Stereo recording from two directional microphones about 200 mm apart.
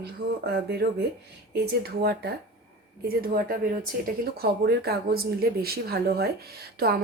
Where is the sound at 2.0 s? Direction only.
55° right (ahead or behind).